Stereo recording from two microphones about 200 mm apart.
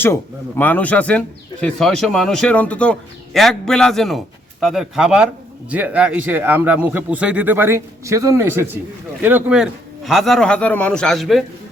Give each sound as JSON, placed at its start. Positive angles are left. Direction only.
{"t": 0.0, "sound": "a man's voice", "side_deg": 10}